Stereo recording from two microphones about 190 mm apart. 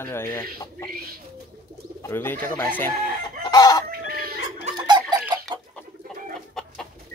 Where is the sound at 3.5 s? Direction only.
20° left (ahead or behind).